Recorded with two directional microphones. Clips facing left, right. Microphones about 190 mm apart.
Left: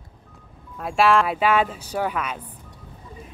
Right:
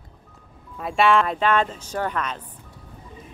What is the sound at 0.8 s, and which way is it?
Speech, centre (ahead or behind).